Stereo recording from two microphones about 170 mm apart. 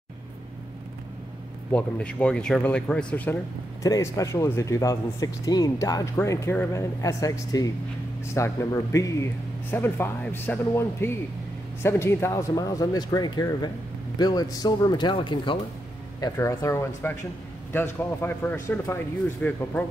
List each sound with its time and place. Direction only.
1.7 s speech: 5° left (ahead or behind)
3.8 s speech: 20° left (ahead or behind)
16.2 s speech: 15° left (ahead or behind)